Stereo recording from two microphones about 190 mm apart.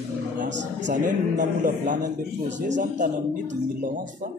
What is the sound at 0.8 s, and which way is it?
A man's voice, 40° right (ahead or behind).